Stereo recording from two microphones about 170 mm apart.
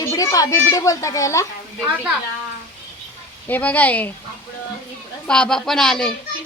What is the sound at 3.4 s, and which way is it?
Speech, 10° left (ahead or behind).